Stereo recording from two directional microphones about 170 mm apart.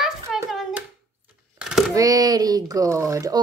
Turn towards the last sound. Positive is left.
turn(degrees=-20)  # may be behind; listen again after turning